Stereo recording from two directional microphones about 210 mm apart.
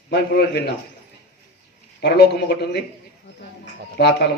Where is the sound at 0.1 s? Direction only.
50° left (ahead or behind).